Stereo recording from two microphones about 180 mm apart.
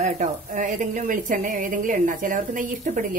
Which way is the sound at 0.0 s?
45° right (ahead or behind).